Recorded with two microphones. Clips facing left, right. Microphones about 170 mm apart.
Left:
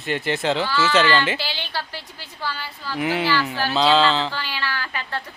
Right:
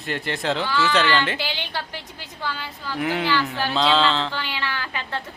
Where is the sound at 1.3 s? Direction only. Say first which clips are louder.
Even; 15° right (ahead or behind).